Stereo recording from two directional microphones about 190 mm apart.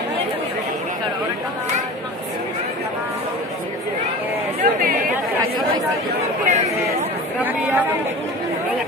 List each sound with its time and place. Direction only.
4.6 s chatter: 50° right (ahead or behind)
6.4 s speech: 35° right (ahead or behind)
7.4 s speech: 10° right (ahead or behind)